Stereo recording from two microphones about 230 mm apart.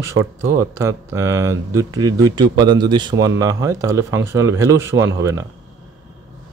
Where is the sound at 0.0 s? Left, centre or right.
Centre.